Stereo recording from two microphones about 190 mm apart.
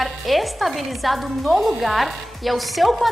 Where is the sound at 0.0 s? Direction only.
Centre (ahead or behind).